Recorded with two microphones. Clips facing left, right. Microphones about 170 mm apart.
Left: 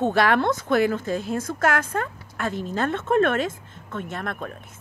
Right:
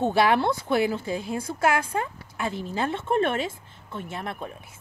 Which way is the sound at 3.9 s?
10° right (ahead or behind).